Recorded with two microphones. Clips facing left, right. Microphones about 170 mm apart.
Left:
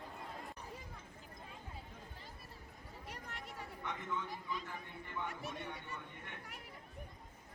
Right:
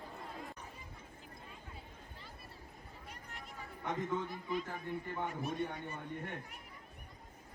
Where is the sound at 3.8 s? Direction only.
40° right (ahead or behind).